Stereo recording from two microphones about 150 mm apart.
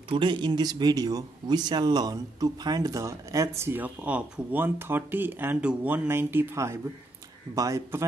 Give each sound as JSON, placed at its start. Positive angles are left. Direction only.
{"t": 0.1, "sound": "speech", "side_deg": -30}